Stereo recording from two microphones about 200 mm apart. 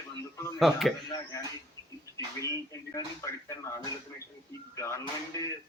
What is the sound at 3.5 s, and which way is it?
Speech, 15° left (ahead or behind).